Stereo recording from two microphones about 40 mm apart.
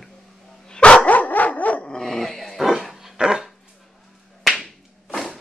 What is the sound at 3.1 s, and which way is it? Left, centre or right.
Dog, centre.